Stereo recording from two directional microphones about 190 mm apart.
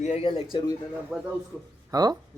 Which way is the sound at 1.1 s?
Centre (ahead or behind).